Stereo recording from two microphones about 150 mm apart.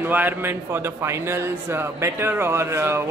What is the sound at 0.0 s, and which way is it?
A man's voice, 15° right (ahead or behind).